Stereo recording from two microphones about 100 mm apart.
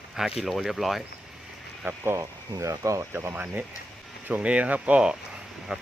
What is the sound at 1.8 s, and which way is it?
Speech, 25° right (ahead or behind).